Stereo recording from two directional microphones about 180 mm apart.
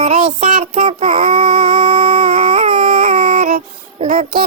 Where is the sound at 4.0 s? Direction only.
45° right (ahead or behind).